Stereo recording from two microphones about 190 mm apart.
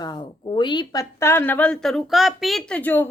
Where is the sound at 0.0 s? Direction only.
25° left (ahead or behind).